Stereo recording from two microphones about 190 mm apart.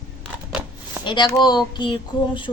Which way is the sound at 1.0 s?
25° left (ahead or behind).